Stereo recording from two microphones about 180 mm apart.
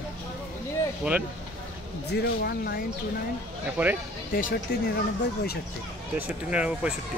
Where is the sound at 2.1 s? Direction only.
65° left (ahead or behind).